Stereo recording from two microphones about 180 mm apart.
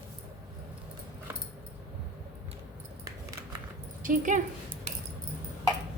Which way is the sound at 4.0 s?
50° right (ahead or behind).